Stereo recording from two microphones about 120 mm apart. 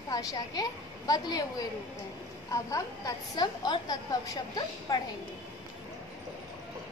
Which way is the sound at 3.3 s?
35° left (ahead or behind).